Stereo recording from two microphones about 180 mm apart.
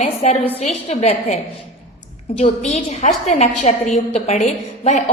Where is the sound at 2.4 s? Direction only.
40° left (ahead or behind).